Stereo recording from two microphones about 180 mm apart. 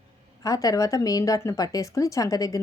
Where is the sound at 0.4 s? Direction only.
20° left (ahead or behind).